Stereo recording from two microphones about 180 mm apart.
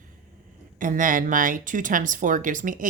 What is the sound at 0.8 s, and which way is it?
Speech, 50° right (ahead or behind).